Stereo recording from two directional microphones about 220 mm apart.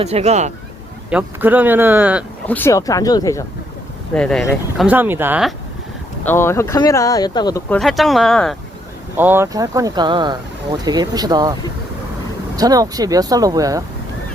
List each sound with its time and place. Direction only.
0.0 s speech: 30° right (ahead or behind)
1.1 s speech: 10° right (ahead or behind)
2.5 s speech: 10° left (ahead or behind)
4.1 s speech: 5° left (ahead or behind)
4.8 s speech: 5° right (ahead or behind)
6.2 s speech: 10° left (ahead or behind)
7.7 s speech: centre (ahead or behind)
9.1 s speech: 10° right (ahead or behind)
12.5 s speech: 15° right (ahead or behind)